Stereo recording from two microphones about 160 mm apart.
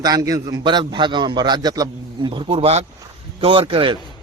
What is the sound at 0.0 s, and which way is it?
A man's voice, 25° right (ahead or behind).